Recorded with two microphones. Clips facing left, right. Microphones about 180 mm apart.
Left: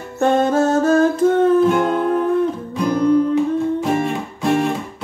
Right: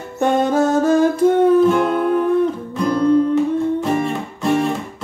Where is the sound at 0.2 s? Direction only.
15° right (ahead or behind).